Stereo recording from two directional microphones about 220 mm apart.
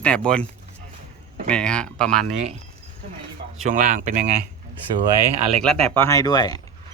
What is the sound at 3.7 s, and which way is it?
Speech, 35° right (ahead or behind).